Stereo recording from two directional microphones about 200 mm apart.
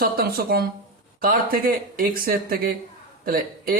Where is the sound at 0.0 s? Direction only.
50° right (ahead or behind).